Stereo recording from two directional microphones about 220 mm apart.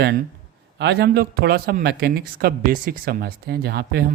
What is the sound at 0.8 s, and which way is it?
Speech, 50° right (ahead or behind).